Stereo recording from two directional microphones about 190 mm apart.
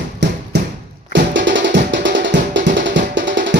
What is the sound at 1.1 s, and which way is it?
Music, 75° right (ahead or behind).